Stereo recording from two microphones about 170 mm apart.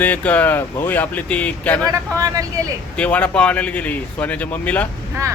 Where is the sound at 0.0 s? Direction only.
10° left (ahead or behind).